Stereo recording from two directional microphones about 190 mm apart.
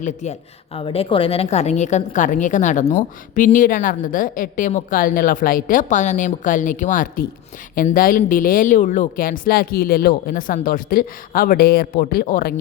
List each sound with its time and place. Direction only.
0.0 s speech: 40° left (ahead or behind)
0.8 s a woman's voice: 30° left (ahead or behind); by 12.5 s 50° left (ahead or behind)